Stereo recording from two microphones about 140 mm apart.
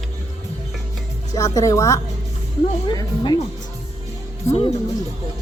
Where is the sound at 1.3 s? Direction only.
25° left (ahead or behind).